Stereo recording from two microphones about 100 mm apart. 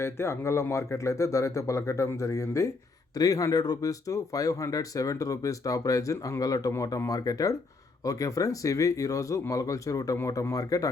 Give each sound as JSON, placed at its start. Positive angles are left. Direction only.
{"t": 0.0, "sound": "speech", "side_deg": 30}